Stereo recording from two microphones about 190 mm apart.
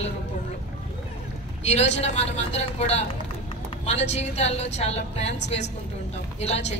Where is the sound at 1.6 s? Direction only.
35° left (ahead or behind).